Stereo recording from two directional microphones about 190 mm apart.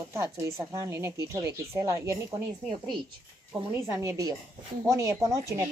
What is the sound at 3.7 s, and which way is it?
Speech, 15° right (ahead or behind).